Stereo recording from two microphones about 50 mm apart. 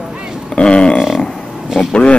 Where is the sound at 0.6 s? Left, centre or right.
Centre.